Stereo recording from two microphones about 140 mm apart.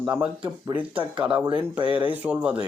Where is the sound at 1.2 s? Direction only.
35° right (ahead or behind).